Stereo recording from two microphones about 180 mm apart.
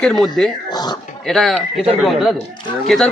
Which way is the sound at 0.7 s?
25° left (ahead or behind).